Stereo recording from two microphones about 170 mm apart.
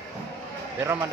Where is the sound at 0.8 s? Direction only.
15° right (ahead or behind).